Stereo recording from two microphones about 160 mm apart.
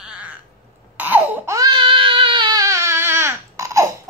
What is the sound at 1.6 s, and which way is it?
Baby cry, 30° right (ahead or behind).